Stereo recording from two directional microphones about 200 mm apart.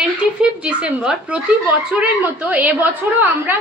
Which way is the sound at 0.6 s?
5° right (ahead or behind).